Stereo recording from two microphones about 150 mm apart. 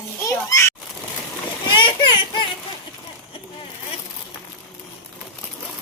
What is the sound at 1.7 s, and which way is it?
Speech, 30° left (ahead or behind).